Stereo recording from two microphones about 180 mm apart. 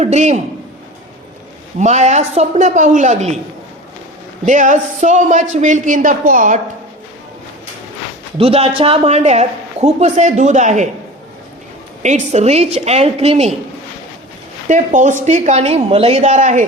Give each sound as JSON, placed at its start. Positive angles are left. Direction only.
{"t": 0.0, "sound": "speech", "side_deg": -40}
{"t": 1.8, "sound": "speech", "side_deg": -40}
{"t": 4.4, "sound": "speech", "side_deg": -45}
{"t": 8.4, "sound": "speech", "side_deg": -30}
{"t": 12.0, "sound": "speech", "side_deg": -40}
{"t": 14.7, "sound": "speech", "side_deg": -45}